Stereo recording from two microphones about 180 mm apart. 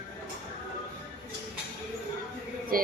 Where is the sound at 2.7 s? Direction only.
55° right (ahead or behind).